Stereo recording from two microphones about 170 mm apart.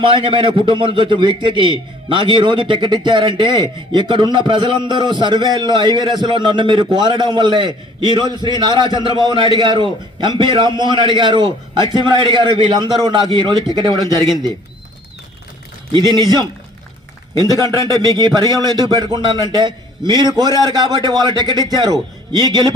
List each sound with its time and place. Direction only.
0.0 s a man's voice: 30° right (ahead or behind)
15.9 s a man's voice: 25° right (ahead or behind)